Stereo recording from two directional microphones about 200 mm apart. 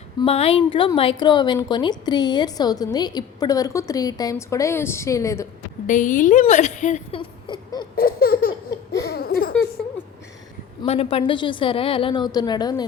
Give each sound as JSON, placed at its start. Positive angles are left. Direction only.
{"t": 0.2, "sound": "a woman's voice", "side_deg": 30}
{"t": 5.9, "sound": "a woman's voice", "side_deg": 40}
{"t": 7.2, "sound": "a sound", "side_deg": 25}
{"t": 7.9, "sound": "baby laughter", "side_deg": 50}
{"t": 9.0, "sound": "a sound", "side_deg": 50}
{"t": 10.8, "sound": "a woman's voice", "side_deg": 30}